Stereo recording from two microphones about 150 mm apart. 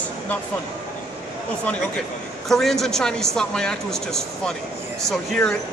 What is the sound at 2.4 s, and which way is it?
Speech, centre (ahead or behind).